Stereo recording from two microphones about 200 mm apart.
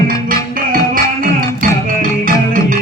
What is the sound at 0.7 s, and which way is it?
Music, 45° right (ahead or behind).